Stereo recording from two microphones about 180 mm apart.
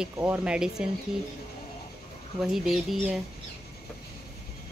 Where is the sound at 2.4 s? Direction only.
5° right (ahead or behind).